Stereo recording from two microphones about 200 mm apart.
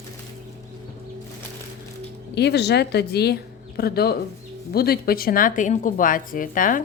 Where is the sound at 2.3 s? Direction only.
55° left (ahead or behind).